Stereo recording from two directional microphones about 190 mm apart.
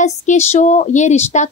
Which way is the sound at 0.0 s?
40° left (ahead or behind).